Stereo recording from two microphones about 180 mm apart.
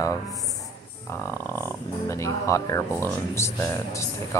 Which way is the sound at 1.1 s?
15° left (ahead or behind).